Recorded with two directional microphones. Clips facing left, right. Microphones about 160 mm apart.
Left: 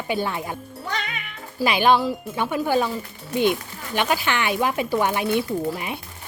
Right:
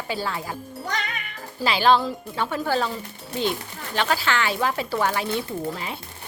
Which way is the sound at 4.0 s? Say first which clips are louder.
Left 1 dB; 15° left (ahead or behind).